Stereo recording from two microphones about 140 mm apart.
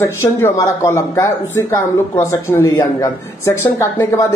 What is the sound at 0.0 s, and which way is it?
A man's voice, 15° left (ahead or behind).